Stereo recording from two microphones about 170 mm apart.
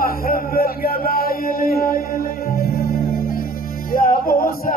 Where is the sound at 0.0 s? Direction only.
60° left (ahead or behind).